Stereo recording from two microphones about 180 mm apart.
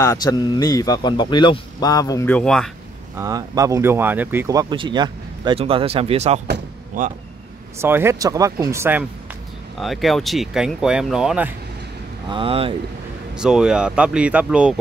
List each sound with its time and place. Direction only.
0.0 s a man's voice: 20° left (ahead or behind)
2.2 s speech: 5° left (ahead or behind)
3.2 s speech: 20° right (ahead or behind); by 6.4 s 35° right (ahead or behind)
7.8 s speech: 15° right (ahead or behind)
9.8 s speech: centre (ahead or behind)
12.3 s speech: 30° right (ahead or behind)
13.3 s speech: 5° right (ahead or behind)